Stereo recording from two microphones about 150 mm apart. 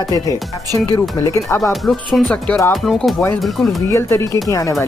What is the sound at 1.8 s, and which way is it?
Speech, centre (ahead or behind).